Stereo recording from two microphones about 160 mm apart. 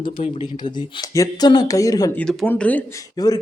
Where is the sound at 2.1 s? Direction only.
5° left (ahead or behind); by 3.4 s 25° left (ahead or behind).